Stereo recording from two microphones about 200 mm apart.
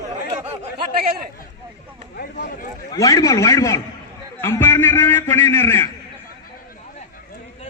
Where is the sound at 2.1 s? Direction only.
50° left (ahead or behind).